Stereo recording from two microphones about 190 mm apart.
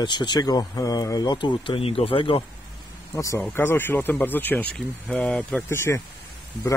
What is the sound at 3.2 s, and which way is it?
Speech, 15° left (ahead or behind).